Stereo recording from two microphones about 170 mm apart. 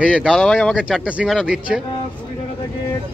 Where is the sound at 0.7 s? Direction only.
5° right (ahead or behind).